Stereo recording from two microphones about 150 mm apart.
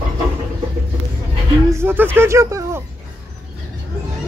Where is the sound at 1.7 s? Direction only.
15° right (ahead or behind).